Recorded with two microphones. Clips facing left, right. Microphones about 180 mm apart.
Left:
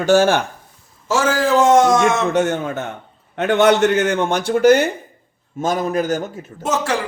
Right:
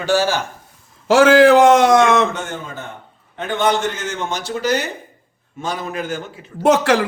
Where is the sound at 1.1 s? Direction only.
65° right (ahead or behind).